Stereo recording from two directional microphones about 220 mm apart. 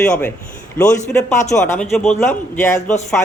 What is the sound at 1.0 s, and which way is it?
Speech, 35° left (ahead or behind).